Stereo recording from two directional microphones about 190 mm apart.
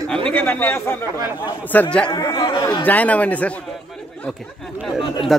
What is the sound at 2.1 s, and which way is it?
Speech, 20° left (ahead or behind).